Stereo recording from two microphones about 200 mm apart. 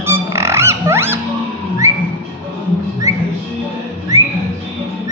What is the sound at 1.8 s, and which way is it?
Music, 15° right (ahead or behind).